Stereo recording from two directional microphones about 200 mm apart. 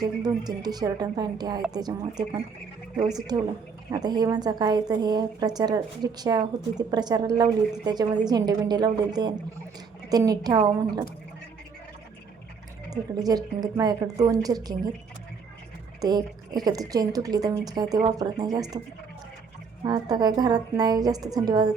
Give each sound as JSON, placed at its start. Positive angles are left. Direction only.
{"t": 0.0, "sound": "a woman's voice", "side_deg": -20}
{"t": 3.2, "sound": "a woman's voice", "side_deg": -20}
{"t": 12.9, "sound": "a woman's voice", "side_deg": -20}
{"t": 16.0, "sound": "a woman's voice", "side_deg": -20}
{"t": 19.8, "sound": "a woman's voice", "side_deg": -20}